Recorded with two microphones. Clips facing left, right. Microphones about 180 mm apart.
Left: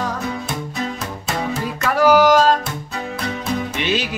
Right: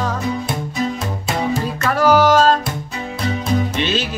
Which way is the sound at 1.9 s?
15° left (ahead or behind).